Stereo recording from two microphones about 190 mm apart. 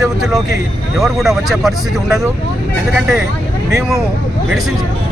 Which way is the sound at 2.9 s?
Centre (ahead or behind).